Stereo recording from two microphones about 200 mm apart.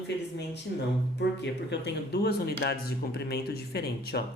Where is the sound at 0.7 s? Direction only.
55° left (ahead or behind).